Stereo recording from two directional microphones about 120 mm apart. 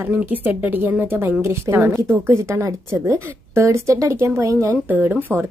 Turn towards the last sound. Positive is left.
turn(degrees=-15)  # may be behind; listen again after turning